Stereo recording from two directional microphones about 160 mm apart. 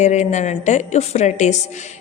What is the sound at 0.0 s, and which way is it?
A woman's voice, 45° left (ahead or behind).